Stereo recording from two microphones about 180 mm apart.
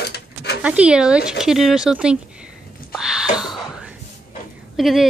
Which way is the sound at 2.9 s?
5° right (ahead or behind).